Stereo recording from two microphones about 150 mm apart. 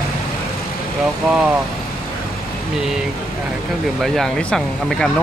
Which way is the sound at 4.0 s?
Centre (ahead or behind).